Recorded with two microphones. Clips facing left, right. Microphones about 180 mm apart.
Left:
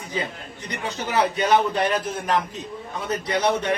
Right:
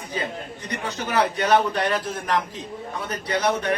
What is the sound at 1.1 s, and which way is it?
Speech, 20° left (ahead or behind).